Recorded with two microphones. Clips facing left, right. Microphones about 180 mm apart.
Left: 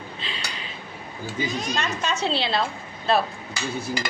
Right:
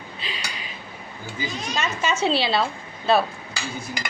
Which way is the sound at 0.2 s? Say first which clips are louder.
Right 3 dB; 10° right (ahead or behind).